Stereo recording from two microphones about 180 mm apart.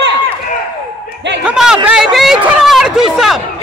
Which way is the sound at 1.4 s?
5° right (ahead or behind).